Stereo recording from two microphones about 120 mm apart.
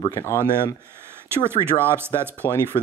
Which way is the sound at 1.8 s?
20° right (ahead or behind).